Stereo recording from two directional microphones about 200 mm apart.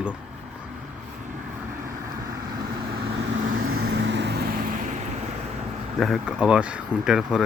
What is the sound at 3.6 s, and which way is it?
Vehicle, 65° right (ahead or behind).